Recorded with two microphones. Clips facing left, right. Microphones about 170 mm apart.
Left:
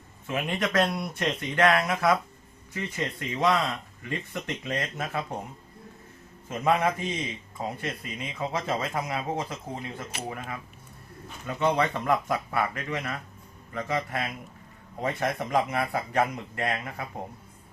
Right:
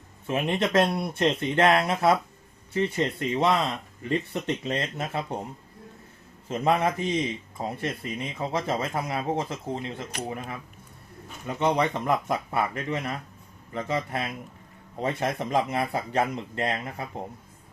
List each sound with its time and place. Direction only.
0.3 s speech: 25° right (ahead or behind)
6.5 s speech: 30° right (ahead or behind)
10.1 s speech: 5° left (ahead or behind)
11.4 s speech: 20° right (ahead or behind)